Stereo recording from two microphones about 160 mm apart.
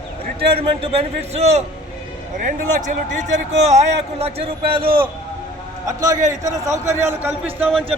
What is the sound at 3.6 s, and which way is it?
Speech, 45° right (ahead or behind).